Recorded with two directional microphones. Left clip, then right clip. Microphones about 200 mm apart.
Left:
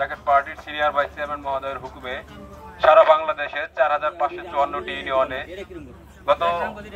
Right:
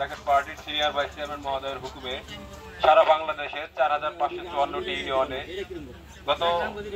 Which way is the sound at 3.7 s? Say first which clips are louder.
Left 4 dB; 15° left (ahead or behind).